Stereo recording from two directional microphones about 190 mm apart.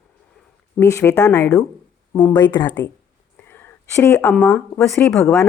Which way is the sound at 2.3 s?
25° left (ahead or behind).